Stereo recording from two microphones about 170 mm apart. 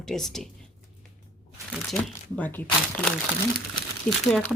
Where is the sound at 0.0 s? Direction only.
Centre (ahead or behind).